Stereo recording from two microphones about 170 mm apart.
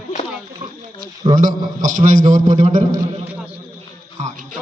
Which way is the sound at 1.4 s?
50° right (ahead or behind).